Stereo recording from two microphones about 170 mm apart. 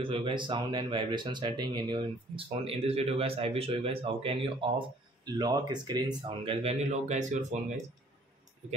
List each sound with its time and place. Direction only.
0.0 s speech: 30° right (ahead or behind)